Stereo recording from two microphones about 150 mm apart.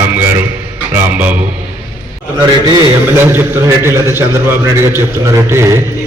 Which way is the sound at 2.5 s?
30° right (ahead or behind).